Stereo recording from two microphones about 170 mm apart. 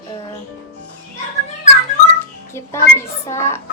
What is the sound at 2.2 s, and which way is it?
A child's voice, 15° left (ahead or behind).